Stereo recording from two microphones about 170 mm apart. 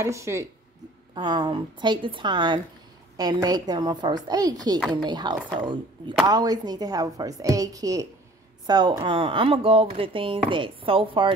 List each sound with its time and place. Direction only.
0.0 s a woman's voice: 15° right (ahead or behind)